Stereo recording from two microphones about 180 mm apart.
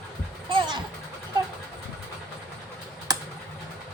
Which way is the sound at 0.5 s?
25° right (ahead or behind).